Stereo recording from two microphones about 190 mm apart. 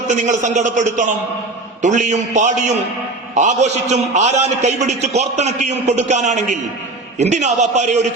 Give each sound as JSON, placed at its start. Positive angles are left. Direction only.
{"t": 0.1, "sound": "a man's voice", "side_deg": -40}